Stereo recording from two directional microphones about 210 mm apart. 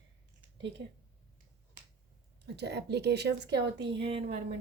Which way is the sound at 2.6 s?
50° right (ahead or behind).